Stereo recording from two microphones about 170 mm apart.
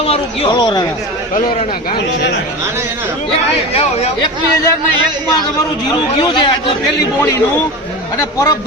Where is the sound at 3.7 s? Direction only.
40° left (ahead or behind).